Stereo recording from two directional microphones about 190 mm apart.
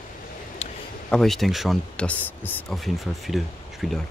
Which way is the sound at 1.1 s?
Centre (ahead or behind).